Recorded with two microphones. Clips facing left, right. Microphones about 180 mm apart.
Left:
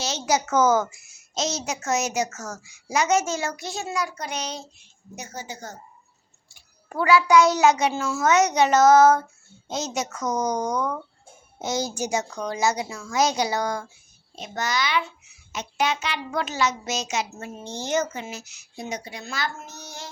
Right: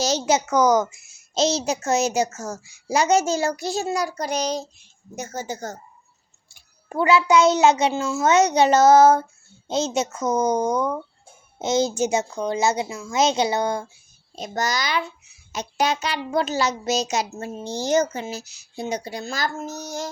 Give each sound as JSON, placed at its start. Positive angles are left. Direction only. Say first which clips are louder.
{"t": 0.3, "sound": "a child's voice", "louder": "even", "side_deg": -20}
{"t": 6.8, "sound": "a child's voice", "louder": "right 1 dB", "side_deg": -25}
{"t": 14.3, "sound": "a child's voice", "louder": "right 2 dB", "side_deg": -40}